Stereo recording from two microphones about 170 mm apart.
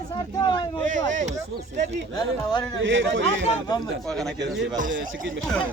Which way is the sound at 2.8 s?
90° right.